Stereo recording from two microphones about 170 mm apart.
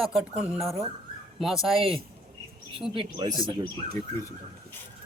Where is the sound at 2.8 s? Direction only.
Centre (ahead or behind).